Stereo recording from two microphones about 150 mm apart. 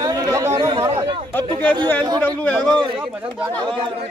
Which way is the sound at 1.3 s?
10° left (ahead or behind).